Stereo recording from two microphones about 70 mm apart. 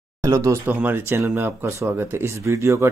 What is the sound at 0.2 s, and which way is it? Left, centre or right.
Speech, right.